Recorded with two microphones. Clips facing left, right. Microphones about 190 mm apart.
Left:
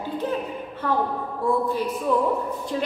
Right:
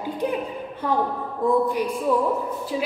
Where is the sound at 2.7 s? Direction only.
5° right (ahead or behind).